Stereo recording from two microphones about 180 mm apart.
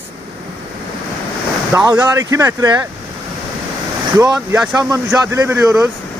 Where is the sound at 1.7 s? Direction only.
15° right (ahead or behind).